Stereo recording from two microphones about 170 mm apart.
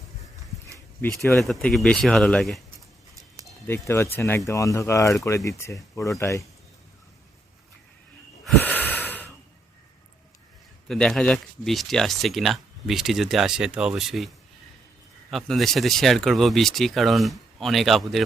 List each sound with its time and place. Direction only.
1.4 s speech: centre (ahead or behind)
3.7 s speech: 15° left (ahead or behind)
8.4 s wheeze: 10° left (ahead or behind)
10.8 s speech: 5° left (ahead or behind)